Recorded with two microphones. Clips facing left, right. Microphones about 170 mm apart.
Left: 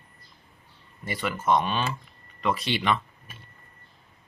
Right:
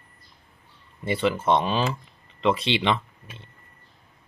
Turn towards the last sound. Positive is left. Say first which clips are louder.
# right 4 dB
turn(degrees=-25)  # may be behind; listen again after turning